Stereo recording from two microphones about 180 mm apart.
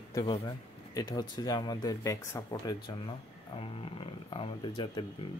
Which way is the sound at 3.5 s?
30° left (ahead or behind).